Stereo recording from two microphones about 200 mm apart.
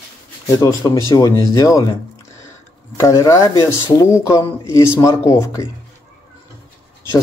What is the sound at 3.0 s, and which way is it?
Speech, 15° left (ahead or behind).